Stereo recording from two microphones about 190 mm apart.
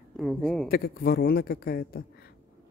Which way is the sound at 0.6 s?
55° left (ahead or behind).